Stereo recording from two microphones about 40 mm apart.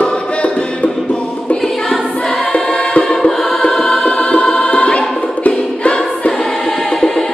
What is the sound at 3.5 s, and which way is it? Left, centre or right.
Choir, centre.